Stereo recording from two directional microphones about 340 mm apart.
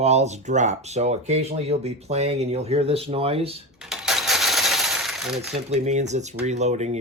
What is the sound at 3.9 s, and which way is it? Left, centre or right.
Coin, centre.